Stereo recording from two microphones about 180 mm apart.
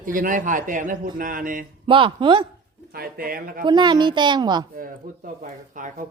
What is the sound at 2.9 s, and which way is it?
Speech, 55° right (ahead or behind).